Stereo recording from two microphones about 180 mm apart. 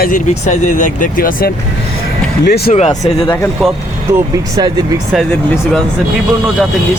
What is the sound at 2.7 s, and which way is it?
Speech, 40° left (ahead or behind).